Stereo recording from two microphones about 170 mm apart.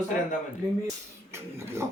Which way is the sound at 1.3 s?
15° right (ahead or behind).